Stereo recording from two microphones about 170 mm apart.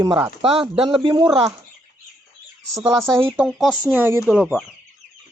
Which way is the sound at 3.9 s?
10° right (ahead or behind).